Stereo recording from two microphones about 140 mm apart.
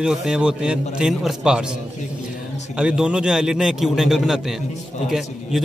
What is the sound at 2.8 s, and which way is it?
Speech, 5° right (ahead or behind).